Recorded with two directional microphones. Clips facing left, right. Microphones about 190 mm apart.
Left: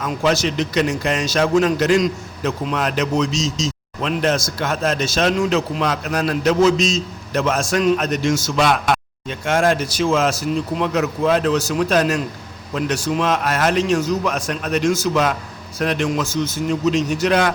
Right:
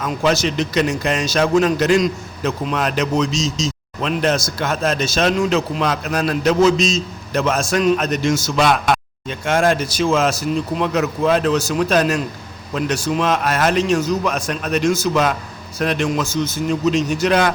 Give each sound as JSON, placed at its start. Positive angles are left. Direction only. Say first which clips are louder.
{"t": 0.0, "sound": "a man's voice", "louder": "right 1 dB", "side_deg": -25}